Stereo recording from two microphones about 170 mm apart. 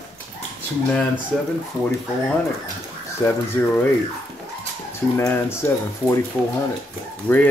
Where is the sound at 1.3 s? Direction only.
Centre (ahead or behind).